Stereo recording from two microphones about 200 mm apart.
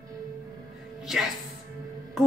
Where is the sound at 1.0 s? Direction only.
Centre (ahead or behind).